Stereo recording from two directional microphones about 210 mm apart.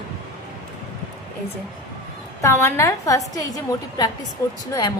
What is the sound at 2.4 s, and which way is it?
A man's voice, 15° left (ahead or behind).